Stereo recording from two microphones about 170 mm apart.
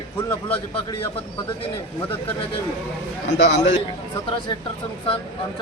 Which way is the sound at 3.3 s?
90° left.